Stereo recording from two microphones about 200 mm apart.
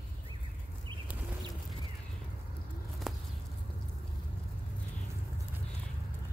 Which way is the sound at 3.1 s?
Centre (ahead or behind).